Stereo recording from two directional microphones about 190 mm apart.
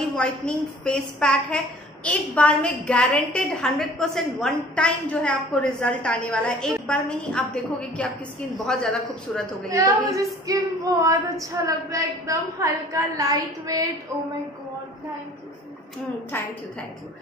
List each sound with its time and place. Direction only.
0.1 s a woman's voice: 5° left (ahead or behind)
9.7 s a woman's voice: 15° right (ahead or behind)
16.3 s a woman's voice: 10° left (ahead or behind)